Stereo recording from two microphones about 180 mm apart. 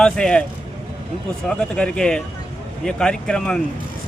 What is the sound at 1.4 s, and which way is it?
Speech, 5° left (ahead or behind).